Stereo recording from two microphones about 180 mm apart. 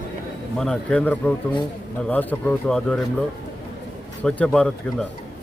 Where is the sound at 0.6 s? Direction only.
5° left (ahead or behind).